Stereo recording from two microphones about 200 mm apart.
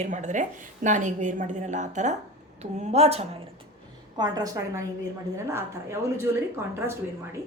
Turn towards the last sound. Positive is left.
turn(degrees=-15)  # may be behind; listen again after turning